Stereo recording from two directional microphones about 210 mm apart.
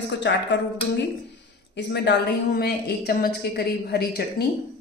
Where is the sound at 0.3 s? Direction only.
55° left (ahead or behind).